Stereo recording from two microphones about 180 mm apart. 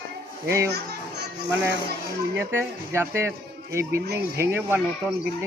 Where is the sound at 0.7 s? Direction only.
65° right (ahead or behind).